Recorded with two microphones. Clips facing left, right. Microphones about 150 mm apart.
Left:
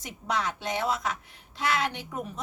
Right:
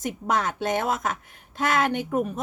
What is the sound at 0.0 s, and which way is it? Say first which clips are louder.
A woman's voice: right 5 dB; 50° right (ahead or behind).